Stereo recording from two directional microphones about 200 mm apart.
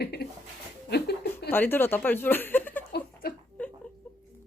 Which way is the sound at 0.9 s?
55° left (ahead or behind).